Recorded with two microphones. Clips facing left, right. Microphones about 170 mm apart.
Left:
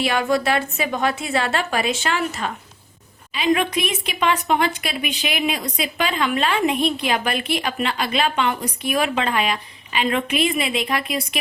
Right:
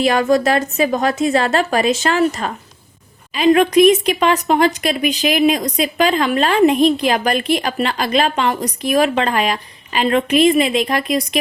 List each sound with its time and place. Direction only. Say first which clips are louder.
0.0 s a woman's voice: right 6 dB; 40° right (ahead or behind)